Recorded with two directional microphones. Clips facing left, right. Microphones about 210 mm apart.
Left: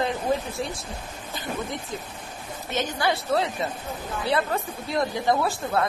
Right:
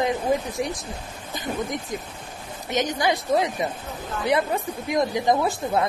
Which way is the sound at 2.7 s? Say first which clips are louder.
Right 3 dB; 15° right (ahead or behind).